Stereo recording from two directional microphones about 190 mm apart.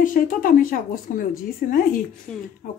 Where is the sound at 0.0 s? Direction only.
45° left (ahead or behind).